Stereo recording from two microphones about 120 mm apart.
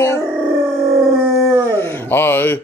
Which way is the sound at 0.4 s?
15° right (ahead or behind).